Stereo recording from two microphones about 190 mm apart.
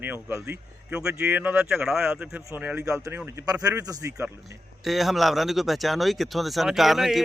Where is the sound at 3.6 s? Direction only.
20° right (ahead or behind).